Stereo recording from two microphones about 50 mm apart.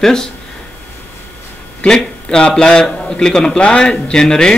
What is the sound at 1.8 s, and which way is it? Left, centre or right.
A man's voice, centre.